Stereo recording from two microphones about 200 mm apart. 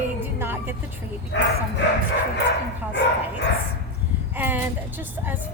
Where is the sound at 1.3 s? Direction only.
60° left (ahead or behind).